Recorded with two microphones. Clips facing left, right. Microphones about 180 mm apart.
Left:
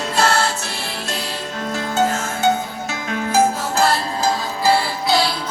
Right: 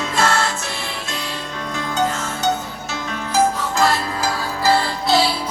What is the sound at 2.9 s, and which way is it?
Music, 50° left (ahead or behind).